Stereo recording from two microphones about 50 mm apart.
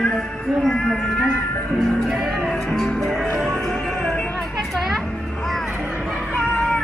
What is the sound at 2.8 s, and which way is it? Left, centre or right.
Music, centre.